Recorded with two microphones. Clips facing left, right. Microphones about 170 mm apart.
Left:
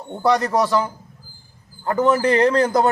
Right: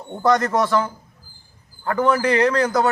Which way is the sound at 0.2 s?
10° left (ahead or behind).